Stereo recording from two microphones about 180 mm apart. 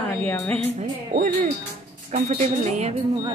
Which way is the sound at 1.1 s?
55° right (ahead or behind).